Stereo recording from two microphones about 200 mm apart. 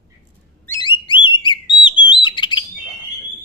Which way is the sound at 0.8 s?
25° left (ahead or behind).